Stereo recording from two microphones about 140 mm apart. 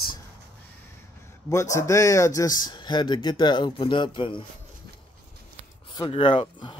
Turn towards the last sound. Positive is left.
turn(degrees=35)  # may be behind; listen again after turning